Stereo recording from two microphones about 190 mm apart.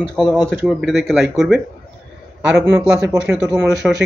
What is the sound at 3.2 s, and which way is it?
Speech, 5° right (ahead or behind).